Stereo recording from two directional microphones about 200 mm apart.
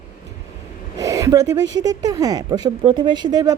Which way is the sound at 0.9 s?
15° right (ahead or behind).